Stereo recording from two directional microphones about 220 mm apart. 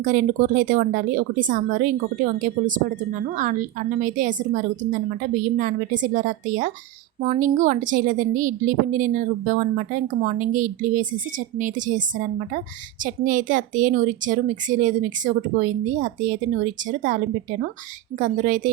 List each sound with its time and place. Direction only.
0.0 s a woman's voice: 40° right (ahead or behind)